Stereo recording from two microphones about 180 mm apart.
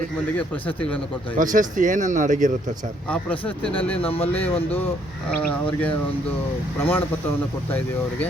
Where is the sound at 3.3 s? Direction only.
30° left (ahead or behind).